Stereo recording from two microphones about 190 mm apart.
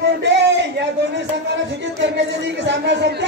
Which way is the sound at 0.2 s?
65° right (ahead or behind).